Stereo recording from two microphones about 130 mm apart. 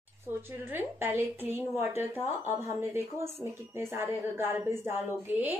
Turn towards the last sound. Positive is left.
turn(degrees=-15)  # may be behind; listen again after turning